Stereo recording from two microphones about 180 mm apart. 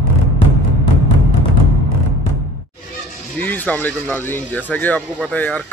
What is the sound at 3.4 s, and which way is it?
Speech, 10° left (ahead or behind).